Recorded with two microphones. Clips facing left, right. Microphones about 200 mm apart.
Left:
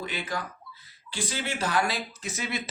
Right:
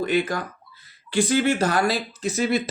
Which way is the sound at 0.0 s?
50° right (ahead or behind).